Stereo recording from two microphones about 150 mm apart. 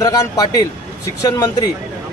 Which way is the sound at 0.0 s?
25° left (ahead or behind).